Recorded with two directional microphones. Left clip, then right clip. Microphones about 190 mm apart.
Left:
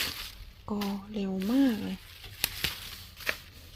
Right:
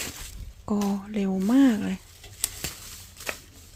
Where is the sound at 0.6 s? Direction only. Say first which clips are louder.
Right 6 dB; 35° right (ahead or behind).